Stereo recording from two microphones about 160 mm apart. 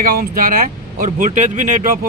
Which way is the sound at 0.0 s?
65° right (ahead or behind).